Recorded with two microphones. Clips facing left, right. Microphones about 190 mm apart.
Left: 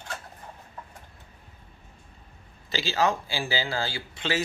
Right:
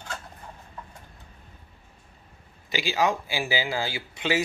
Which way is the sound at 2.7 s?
15° right (ahead or behind).